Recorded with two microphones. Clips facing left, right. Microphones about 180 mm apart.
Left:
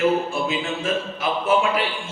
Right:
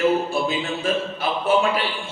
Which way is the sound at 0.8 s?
30° right (ahead or behind).